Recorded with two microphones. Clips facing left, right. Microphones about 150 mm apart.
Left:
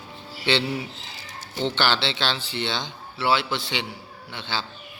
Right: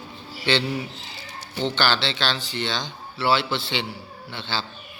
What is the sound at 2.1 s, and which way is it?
Speech, 20° left (ahead or behind).